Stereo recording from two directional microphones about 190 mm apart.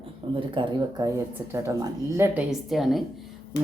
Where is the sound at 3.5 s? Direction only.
60° left (ahead or behind).